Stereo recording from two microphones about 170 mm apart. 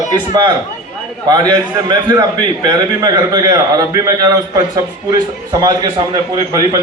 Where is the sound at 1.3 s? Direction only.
25° right (ahead or behind).